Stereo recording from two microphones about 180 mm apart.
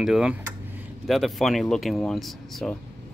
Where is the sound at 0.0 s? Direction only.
5° right (ahead or behind).